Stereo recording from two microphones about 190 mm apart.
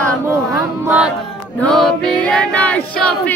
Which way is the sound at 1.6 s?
5° left (ahead or behind).